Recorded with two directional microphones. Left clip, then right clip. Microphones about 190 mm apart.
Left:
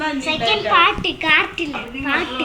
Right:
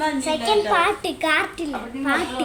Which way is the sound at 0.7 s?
55° right (ahead or behind).